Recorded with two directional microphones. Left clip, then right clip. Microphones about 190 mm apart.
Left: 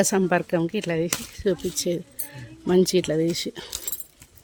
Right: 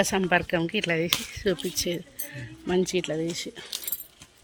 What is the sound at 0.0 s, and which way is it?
Speech, 50° left (ahead or behind).